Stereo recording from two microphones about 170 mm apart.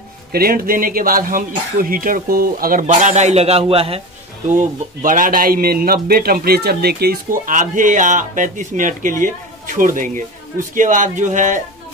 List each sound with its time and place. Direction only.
0.3 s speech: 60° right (ahead or behind); by 4.0 s 35° right (ahead or behind)
4.5 s speech: 50° right (ahead or behind)